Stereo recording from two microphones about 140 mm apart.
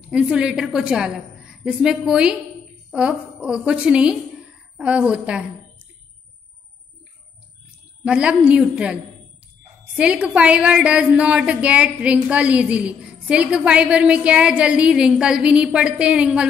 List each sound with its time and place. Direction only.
0.1 s a woman's voice: 5° right (ahead or behind)
8.0 s a woman's voice: 5° right (ahead or behind)